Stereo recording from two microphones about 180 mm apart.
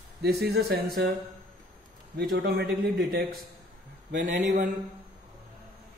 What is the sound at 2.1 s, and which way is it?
A man's voice, 65° right (ahead or behind).